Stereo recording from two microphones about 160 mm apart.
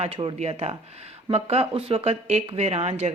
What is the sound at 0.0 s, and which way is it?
Speech, 35° right (ahead or behind).